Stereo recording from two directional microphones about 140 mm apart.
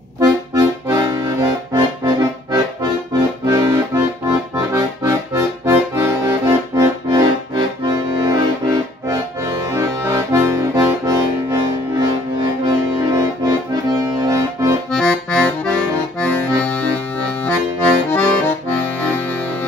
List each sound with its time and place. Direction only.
0.2 s accordion: 25° right (ahead or behind)
14.9 s accordion: 5° left (ahead or behind)